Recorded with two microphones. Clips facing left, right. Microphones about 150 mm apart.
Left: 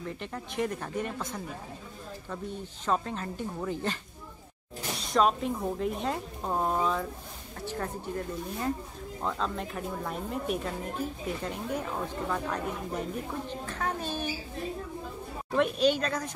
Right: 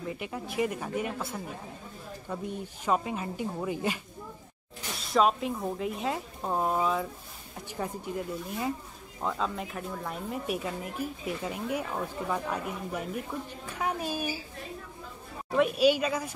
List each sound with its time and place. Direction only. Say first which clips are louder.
0.0 s speech: right 2 dB; 5° right (ahead or behind)
5.0 s speech: right 1 dB; centre (ahead or behind)
13.7 s speech: right 3 dB; 10° right (ahead or behind)
15.5 s speech: right 2 dB; 5° right (ahead or behind)